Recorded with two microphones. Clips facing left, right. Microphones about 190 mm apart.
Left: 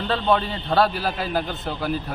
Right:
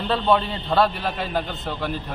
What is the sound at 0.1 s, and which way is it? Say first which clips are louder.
A man's voice: right 1 dB; centre (ahead or behind).